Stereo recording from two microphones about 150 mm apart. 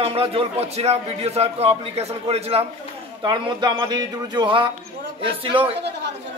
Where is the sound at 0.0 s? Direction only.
40° right (ahead or behind).